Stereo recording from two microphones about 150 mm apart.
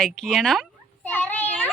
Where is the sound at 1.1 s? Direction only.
10° left (ahead or behind).